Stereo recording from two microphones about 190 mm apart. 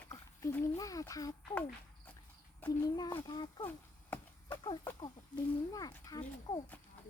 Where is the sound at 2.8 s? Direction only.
20° left (ahead or behind).